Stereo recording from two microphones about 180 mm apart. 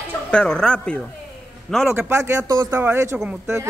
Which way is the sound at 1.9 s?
15° right (ahead or behind).